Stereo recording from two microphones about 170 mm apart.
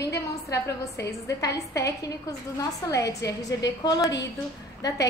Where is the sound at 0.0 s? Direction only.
20° left (ahead or behind).